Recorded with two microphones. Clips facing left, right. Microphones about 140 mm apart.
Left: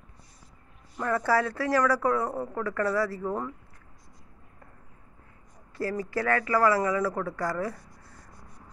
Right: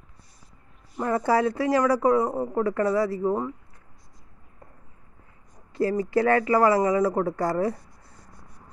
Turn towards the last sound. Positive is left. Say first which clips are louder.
# right 6 dB
turn(degrees=-30)  # may be behind; listen again after turning